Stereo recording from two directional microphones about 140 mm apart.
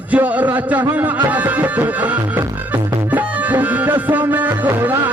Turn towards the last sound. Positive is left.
turn(degrees=-15)  # may be behind; listen again after turning